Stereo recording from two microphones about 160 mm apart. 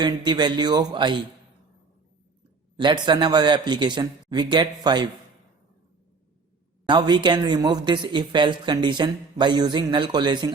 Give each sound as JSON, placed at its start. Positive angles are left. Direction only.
{"t": 0.0, "sound": "speech", "side_deg": -25}
{"t": 2.7, "sound": "speech", "side_deg": -30}
{"t": 6.8, "sound": "speech", "side_deg": -30}